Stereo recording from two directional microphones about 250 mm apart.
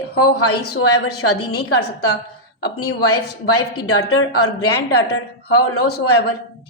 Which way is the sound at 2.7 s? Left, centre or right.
Left.